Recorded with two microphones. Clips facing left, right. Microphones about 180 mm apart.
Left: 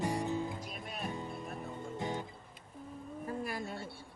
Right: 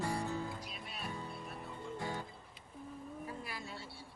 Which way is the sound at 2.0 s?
20° left (ahead or behind).